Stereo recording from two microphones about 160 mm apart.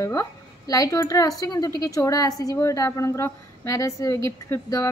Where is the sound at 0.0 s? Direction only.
20° left (ahead or behind).